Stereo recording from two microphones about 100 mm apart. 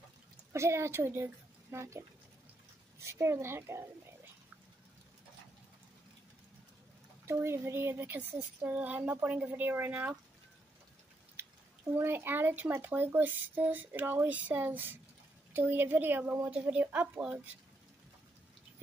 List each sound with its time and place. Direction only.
0.5 s speech: 30° right (ahead or behind)
7.2 s speech: 25° right (ahead or behind)
11.9 s speech: 20° right (ahead or behind)